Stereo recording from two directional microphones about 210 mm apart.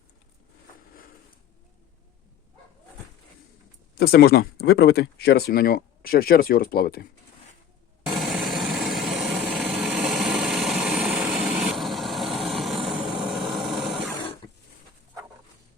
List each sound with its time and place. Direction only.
3.9 s speech: 50° left (ahead or behind)
8.1 s vehicle: centre (ahead or behind)